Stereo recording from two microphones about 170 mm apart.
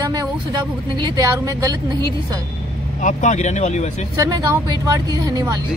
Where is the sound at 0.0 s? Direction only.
25° right (ahead or behind).